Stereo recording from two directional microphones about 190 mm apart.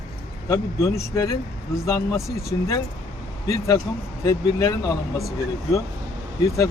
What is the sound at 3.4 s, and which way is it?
Speech, 15° left (ahead or behind).